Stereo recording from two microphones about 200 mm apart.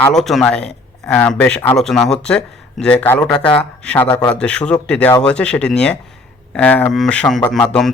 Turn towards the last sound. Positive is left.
turn(degrees=5)  # may be behind; listen again after turning